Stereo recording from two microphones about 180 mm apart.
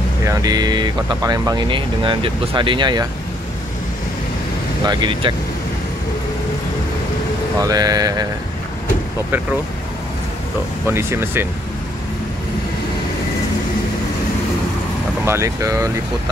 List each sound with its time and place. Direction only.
0.3 s speech: 20° right (ahead or behind)
4.8 s speech: 25° right (ahead or behind)
7.6 s speech: 20° right (ahead or behind)
10.9 s speech: 15° right (ahead or behind)
15.2 s speech: 15° right (ahead or behind)